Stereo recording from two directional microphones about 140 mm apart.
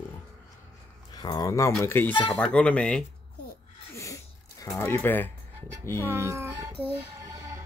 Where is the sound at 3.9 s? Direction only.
25° left (ahead or behind).